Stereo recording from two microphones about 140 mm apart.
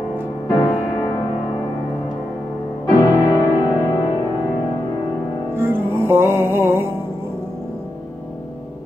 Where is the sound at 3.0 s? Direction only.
30° left (ahead or behind).